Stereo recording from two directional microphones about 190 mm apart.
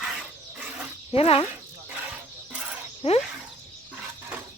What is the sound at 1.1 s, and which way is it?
Speech, 30° left (ahead or behind).